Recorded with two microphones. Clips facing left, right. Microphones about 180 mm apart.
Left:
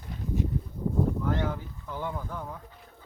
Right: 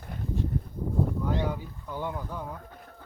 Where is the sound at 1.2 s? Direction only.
15° right (ahead or behind).